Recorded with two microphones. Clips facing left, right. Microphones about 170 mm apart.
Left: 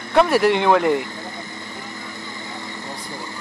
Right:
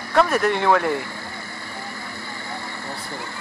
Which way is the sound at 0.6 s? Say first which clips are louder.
Left 2 dB; 15° left (ahead or behind).